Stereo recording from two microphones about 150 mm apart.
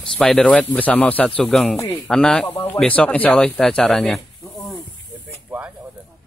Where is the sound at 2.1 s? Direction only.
5° left (ahead or behind).